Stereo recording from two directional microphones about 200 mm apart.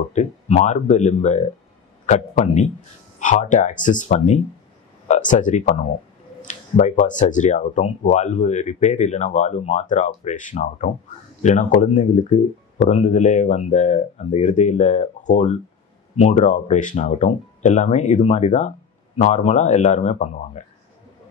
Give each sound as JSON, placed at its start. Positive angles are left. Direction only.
{"t": 0.1, "sound": "speech", "side_deg": 35}